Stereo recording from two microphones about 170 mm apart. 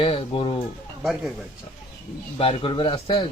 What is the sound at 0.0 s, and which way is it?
Speech, 35° left (ahead or behind).